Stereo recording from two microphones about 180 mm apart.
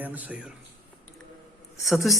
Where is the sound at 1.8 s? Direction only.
Centre (ahead or behind).